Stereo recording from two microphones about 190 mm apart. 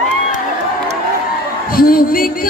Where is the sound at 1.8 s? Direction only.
50° left (ahead or behind).